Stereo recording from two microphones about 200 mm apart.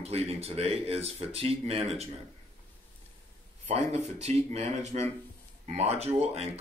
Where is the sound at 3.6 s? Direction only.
35° right (ahead or behind).